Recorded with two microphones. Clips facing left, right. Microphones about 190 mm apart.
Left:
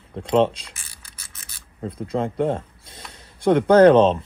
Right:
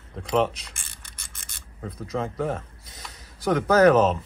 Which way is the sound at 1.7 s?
30° left (ahead or behind).